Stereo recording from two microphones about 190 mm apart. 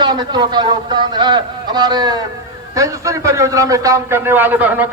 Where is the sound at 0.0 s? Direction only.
25° right (ahead or behind).